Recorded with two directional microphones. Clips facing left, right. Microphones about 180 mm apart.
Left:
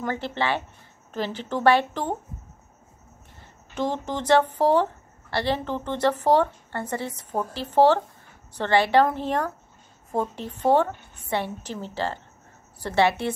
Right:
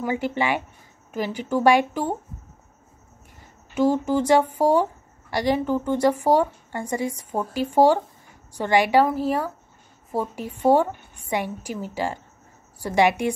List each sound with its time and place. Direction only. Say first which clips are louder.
0.0 s a woman's voice: right 3 dB; 10° right (ahead or behind)
3.7 s a woman's voice: right 7 dB; 10° right (ahead or behind)